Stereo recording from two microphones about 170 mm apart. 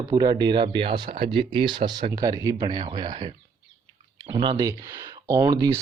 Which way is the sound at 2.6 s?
35° right (ahead or behind).